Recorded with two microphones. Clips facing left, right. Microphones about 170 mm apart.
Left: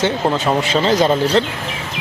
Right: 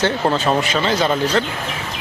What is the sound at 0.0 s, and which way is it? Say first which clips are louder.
Speech: left 1 dB; 20° left (ahead or behind).